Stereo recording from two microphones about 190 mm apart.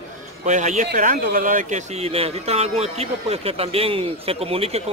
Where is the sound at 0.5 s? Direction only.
40° right (ahead or behind).